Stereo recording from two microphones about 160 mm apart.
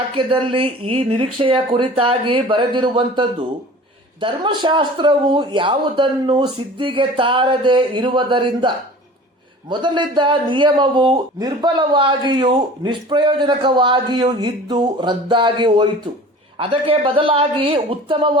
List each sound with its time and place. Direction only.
0.2 s a man's voice: 30° right (ahead or behind)